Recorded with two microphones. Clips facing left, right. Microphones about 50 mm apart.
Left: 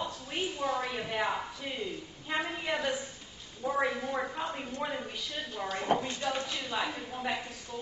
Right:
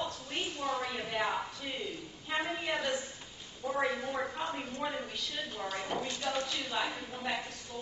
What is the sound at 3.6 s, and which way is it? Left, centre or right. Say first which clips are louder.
Speech: left 3 dB; left.